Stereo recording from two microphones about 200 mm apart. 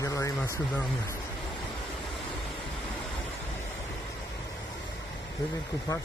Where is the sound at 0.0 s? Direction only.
15° left (ahead or behind).